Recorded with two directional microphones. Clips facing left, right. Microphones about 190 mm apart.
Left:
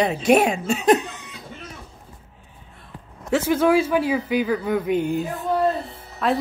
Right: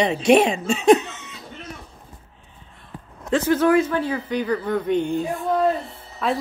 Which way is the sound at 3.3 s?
10° left (ahead or behind).